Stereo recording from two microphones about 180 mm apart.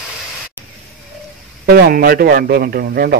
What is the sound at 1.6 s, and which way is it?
Speech, 60° right (ahead or behind).